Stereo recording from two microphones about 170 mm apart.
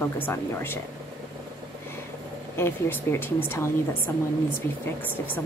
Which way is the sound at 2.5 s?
15° left (ahead or behind).